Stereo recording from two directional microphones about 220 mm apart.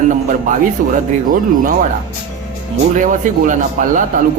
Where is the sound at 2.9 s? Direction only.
35° right (ahead or behind).